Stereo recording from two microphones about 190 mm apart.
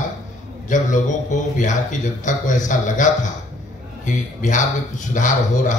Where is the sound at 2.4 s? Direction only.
40° left (ahead or behind).